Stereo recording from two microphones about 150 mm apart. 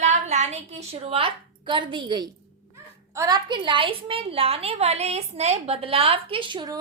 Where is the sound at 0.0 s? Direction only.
50° right (ahead or behind).